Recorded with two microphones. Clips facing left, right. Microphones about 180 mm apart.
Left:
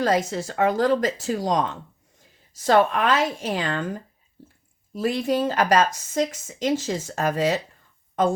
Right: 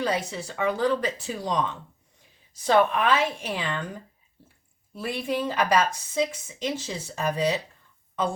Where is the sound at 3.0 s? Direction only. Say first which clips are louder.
Left 2 dB; 40° left (ahead or behind).